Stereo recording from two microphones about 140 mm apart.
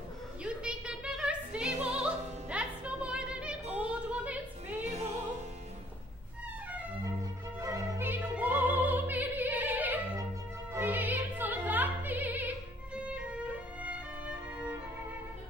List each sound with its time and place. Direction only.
0.4 s a sound: 5° right (ahead or behind)
2.0 s music: 10° right (ahead or behind)
4.9 s music: 50° right (ahead or behind)
7.6 s opera: 20° right (ahead or behind)